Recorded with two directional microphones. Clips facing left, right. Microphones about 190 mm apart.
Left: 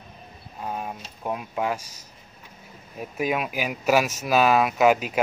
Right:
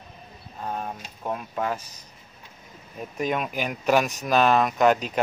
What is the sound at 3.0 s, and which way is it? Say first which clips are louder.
Speech: left 1 dB; 5° left (ahead or behind).